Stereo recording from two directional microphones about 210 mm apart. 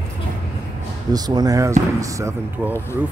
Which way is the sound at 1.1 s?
20° right (ahead or behind).